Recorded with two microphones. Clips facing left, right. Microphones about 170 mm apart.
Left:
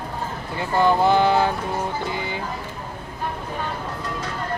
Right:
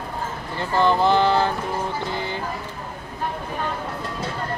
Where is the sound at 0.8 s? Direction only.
10° left (ahead or behind).